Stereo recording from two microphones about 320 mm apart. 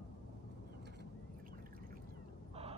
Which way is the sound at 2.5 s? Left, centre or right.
Centre.